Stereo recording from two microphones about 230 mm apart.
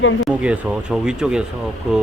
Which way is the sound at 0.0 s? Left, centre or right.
Left.